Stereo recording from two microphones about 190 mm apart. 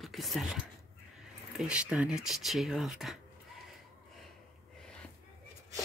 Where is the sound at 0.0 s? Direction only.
Centre (ahead or behind).